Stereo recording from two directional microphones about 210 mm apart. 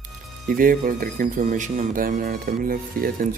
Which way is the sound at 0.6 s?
40° right (ahead or behind).